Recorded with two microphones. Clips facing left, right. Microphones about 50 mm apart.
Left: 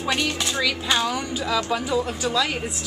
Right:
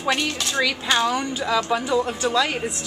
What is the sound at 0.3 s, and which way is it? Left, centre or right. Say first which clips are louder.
Speech: left 1 dB; centre.